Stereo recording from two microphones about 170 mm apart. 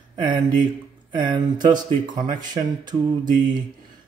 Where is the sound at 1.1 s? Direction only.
25° right (ahead or behind).